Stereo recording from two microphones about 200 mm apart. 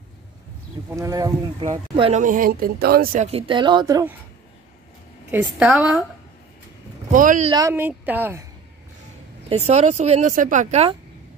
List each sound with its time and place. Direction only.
0.8 s speech: 15° right (ahead or behind)
1.7 s speech: 30° right (ahead or behind)
3.3 s speech: 25° right (ahead or behind)
5.3 s speech: 10° right (ahead or behind)
7.1 s a woman's voice: 40° right (ahead or behind)
7.4 s speech: 20° right (ahead or behind)
9.5 s a woman's voice: 35° right (ahead or behind)